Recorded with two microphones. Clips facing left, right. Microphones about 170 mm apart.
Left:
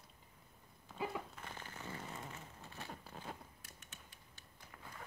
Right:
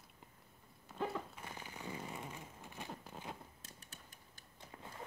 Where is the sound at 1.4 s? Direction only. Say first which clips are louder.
Right 1 dB; 10° right (ahead or behind).